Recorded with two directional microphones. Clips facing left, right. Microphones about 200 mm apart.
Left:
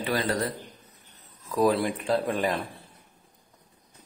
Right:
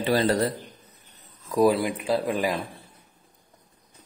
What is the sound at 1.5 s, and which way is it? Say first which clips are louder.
Speech: right 3 dB; 10° right (ahead or behind).